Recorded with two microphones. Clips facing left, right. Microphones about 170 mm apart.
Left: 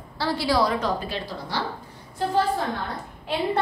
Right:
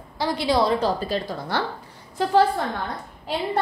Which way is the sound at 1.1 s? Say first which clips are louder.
Right 5 dB; 45° right (ahead or behind).